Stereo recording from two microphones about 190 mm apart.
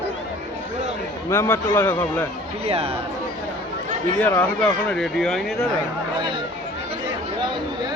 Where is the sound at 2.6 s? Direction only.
30° right (ahead or behind).